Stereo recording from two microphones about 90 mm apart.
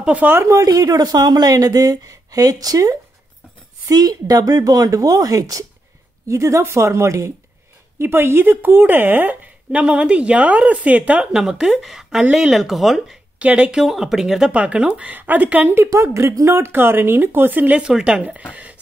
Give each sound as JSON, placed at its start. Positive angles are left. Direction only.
{"t": 0.0, "sound": "speech", "side_deg": -20}
{"t": 0.5, "sound": "a woman's voice", "side_deg": -40}
{"t": 13.4, "sound": "speech", "side_deg": -15}
{"t": 15.7, "sound": "speech", "side_deg": -30}